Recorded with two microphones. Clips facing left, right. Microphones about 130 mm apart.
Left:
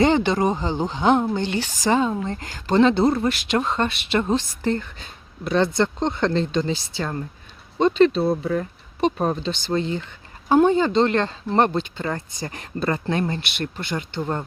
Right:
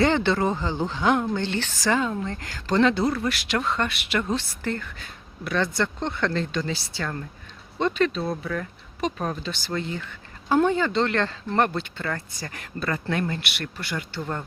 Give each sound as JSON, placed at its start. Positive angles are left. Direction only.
{"t": 0.0, "sound": "speech", "side_deg": 15}
{"t": 8.0, "sound": "speech", "side_deg": 30}